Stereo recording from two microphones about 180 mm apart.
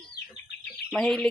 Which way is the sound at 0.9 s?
Centre (ahead or behind).